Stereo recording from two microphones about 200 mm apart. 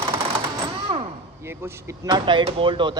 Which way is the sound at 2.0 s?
20° right (ahead or behind).